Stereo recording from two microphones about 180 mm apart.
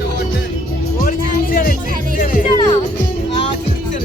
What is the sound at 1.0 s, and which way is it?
Music, 55° left (ahead or behind).